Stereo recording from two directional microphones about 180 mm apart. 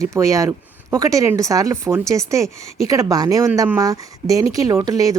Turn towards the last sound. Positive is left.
turn(degrees=-20)  # may be behind; listen again after turning